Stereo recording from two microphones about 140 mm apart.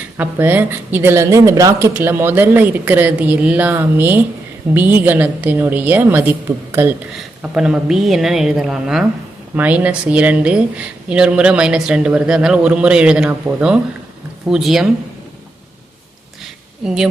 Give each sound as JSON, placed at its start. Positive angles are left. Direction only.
{"t": 0.2, "sound": "speech", "side_deg": -15}
{"t": 7.2, "sound": "a woman's voice", "side_deg": -5}
{"t": 16.4, "sound": "a sound", "side_deg": -5}